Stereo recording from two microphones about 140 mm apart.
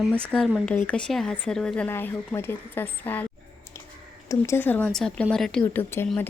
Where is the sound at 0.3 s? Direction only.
Centre (ahead or behind).